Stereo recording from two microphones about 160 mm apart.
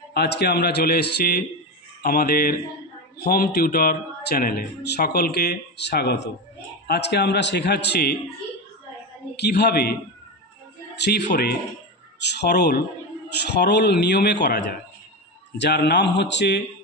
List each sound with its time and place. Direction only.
0.1 s a man's voice: 90° left
9.4 s a man's voice: 90° left
11.0 s a man's voice: 90° left